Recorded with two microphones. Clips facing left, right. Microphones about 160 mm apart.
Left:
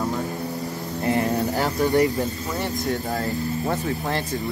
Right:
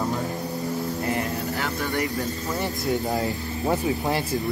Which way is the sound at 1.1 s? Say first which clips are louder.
Left 5 dB; 35° left (ahead or behind).